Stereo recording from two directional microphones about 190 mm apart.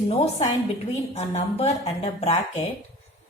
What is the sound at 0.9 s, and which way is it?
A woman's voice, 35° left (ahead or behind).